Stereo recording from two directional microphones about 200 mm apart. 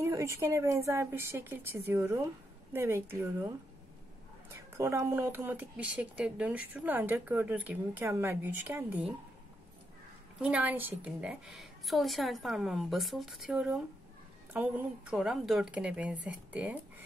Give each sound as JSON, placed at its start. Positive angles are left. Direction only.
{"t": 0.0, "sound": "speech", "side_deg": -15}
{"t": 10.4, "sound": "a woman's voice", "side_deg": -5}